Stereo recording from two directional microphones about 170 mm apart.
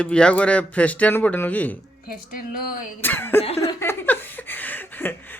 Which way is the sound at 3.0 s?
10° left (ahead or behind).